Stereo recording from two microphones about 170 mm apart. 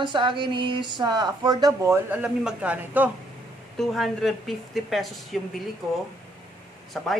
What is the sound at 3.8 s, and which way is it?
Speech, centre (ahead or behind).